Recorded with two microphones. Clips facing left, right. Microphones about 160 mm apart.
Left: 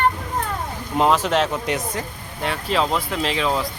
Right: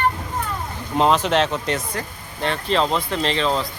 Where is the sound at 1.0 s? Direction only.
5° left (ahead or behind).